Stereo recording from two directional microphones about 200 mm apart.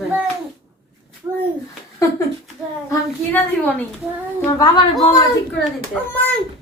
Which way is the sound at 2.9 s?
10° left (ahead or behind).